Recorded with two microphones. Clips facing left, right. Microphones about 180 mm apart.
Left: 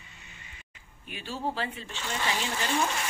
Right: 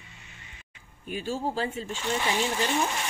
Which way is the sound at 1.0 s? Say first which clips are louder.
Right 4 dB; 45° right (ahead or behind).